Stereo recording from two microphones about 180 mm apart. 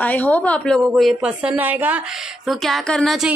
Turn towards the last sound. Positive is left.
turn(degrees=0)  # may be behind; listen again after turning